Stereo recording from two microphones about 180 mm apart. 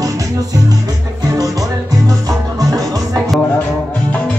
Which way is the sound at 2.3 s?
20° right (ahead or behind).